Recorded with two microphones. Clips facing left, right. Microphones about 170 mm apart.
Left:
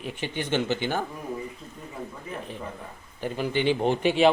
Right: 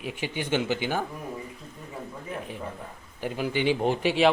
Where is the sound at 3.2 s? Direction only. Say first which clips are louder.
Left 1 dB; 10° right (ahead or behind).